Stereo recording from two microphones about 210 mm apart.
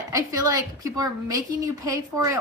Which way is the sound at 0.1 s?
15° right (ahead or behind).